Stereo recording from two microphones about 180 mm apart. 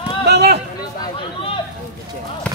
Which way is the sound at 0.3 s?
65° right (ahead or behind).